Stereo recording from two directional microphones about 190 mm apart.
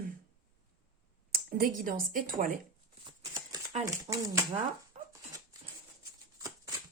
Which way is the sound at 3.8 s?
20° right (ahead or behind).